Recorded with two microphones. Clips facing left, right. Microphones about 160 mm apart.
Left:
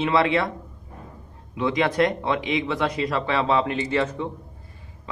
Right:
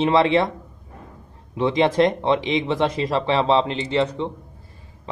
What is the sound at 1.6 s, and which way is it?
Speech, 30° right (ahead or behind).